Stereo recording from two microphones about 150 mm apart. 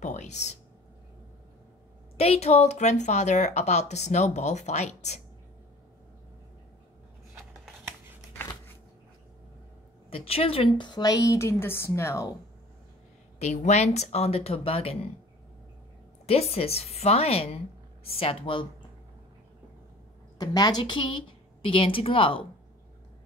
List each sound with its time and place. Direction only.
0.0 s speech: 50° left (ahead or behind)
2.1 s speech: 45° left (ahead or behind)
10.0 s a woman's voice: 40° left (ahead or behind); by 12.3 s 20° left (ahead or behind)
13.4 s speech: 50° left (ahead or behind)
16.3 s a woman's voice: 40° left (ahead or behind)
20.3 s a woman's voice: 25° left (ahead or behind)